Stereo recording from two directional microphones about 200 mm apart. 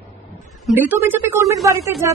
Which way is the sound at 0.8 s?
10° right (ahead or behind).